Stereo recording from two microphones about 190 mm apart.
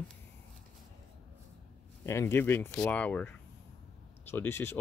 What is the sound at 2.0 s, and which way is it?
Speech, 15° left (ahead or behind).